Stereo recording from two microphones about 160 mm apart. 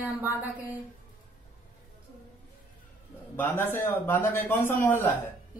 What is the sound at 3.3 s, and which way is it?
A man's voice, 15° left (ahead or behind).